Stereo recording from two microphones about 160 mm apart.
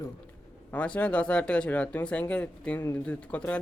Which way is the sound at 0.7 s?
10° left (ahead or behind).